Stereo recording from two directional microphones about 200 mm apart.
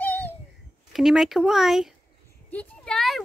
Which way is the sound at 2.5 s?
5° left (ahead or behind).